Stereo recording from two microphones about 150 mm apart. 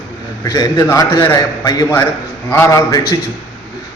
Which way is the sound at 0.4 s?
25° left (ahead or behind).